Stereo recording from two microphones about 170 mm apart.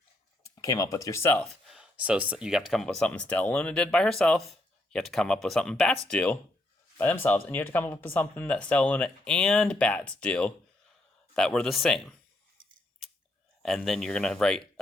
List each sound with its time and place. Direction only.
0.4 s speech: 20° left (ahead or behind)
1.6 s speech: 5° right (ahead or behind)
13.6 s speech: centre (ahead or behind)